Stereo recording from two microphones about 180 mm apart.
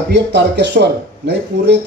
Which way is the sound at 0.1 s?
70° right (ahead or behind).